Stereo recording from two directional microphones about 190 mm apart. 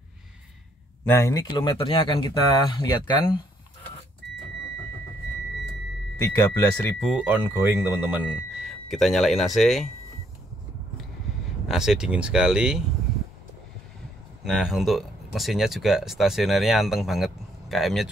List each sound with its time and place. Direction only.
1.1 s speech: 15° left (ahead or behind)
6.1 s speech: 15° left (ahead or behind)
7.1 s speech: 5° right (ahead or behind)
11.6 s speech: centre (ahead or behind)
14.4 s speech: centre (ahead or behind)